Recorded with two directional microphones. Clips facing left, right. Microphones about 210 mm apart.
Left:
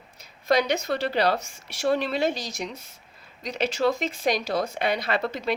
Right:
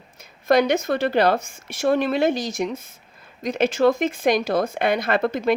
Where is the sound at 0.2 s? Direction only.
50° right (ahead or behind).